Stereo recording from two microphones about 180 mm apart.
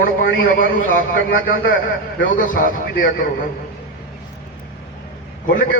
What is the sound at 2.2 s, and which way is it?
A man's voice, 50° left (ahead or behind).